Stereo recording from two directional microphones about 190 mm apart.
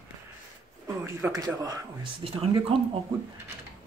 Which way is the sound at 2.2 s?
30° right (ahead or behind).